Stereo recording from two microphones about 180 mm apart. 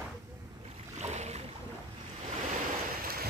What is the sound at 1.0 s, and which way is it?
Boat, 40° right (ahead or behind).